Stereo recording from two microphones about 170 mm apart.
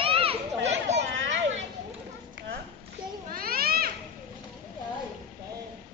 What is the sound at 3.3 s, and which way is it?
Children playing, 60° right (ahead or behind).